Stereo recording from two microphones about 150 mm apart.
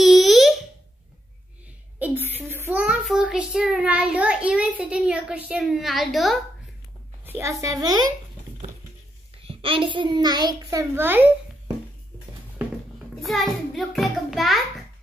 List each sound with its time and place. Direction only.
0.0 s a sound: centre (ahead or behind)
2.0 s a child's voice: 10° right (ahead or behind)
7.2 s a child's voice: 20° right (ahead or behind)
9.4 s a child's voice: 40° right (ahead or behind); by 11.2 s 15° right (ahead or behind)
13.1 s a child's voice: centre (ahead or behind)